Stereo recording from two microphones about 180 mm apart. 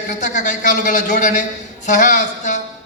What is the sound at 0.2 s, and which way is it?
A man's voice, 45° left (ahead or behind).